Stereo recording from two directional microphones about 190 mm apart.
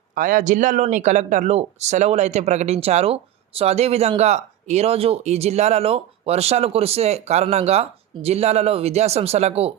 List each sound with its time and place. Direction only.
0.1 s speech: 45° right (ahead or behind)